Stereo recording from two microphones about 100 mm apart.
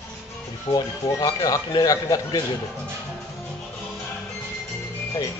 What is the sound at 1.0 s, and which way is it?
Speech, 40° left (ahead or behind).